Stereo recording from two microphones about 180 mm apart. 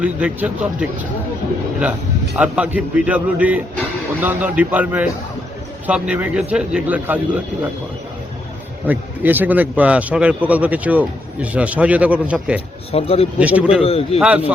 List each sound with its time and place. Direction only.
0.0 s a man's voice: 5° right (ahead or behind)
2.4 s a man's voice: 5° right (ahead or behind)
8.9 s a man's voice: 10° right (ahead or behind)
12.9 s speech: 35° left (ahead or behind)
13.4 s a man's voice: 10° right (ahead or behind)
13.8 s speech: 35° left (ahead or behind)
14.2 s a man's voice: 5° right (ahead or behind)